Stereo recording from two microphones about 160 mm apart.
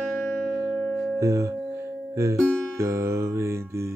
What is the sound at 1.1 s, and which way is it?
Music, 20° right (ahead or behind).